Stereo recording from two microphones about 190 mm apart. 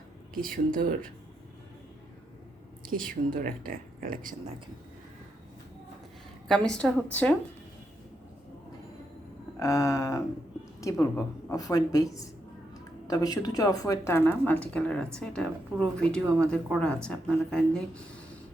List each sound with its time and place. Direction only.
0.5 s speech: 45° right (ahead or behind)
3.1 s speech: 45° right (ahead or behind)
6.5 s speech: 5° left (ahead or behind)
9.6 s a woman's voice: 15° left (ahead or behind)